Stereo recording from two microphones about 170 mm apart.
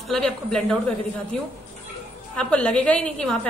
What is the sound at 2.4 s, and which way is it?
A woman's voice, 5° left (ahead or behind).